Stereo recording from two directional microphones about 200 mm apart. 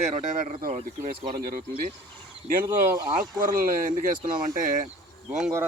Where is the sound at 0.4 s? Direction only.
40° right (ahead or behind).